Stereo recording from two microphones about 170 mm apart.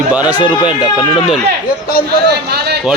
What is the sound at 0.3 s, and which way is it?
Speech, 25° left (ahead or behind).